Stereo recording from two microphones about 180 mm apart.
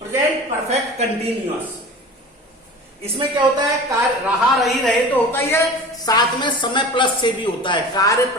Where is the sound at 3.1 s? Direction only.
30° right (ahead or behind).